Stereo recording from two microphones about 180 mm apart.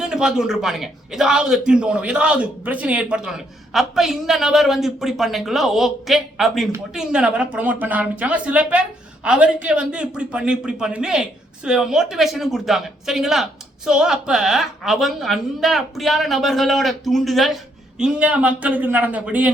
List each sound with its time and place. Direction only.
0.0 s speech: 5° right (ahead or behind)